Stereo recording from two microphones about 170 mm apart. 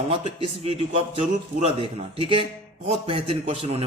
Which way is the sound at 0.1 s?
35° right (ahead or behind).